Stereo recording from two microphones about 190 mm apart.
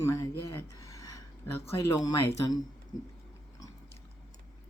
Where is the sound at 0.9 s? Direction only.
15° left (ahead or behind).